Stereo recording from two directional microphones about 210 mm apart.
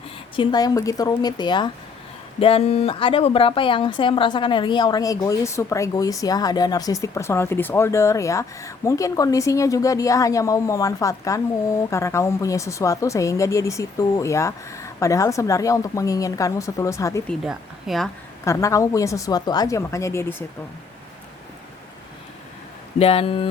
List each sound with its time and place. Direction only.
0.3 s a woman's voice: 20° left (ahead or behind)
17.2 s speech: centre (ahead or behind)
18.4 s speech: 15° left (ahead or behind)
23.0 s a woman's voice: 25° left (ahead or behind)